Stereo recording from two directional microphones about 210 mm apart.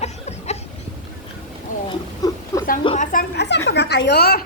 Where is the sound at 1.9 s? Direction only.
15° left (ahead or behind).